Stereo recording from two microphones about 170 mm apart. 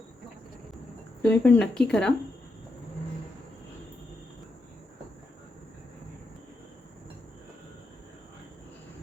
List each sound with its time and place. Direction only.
1.2 s speech: 10° left (ahead or behind)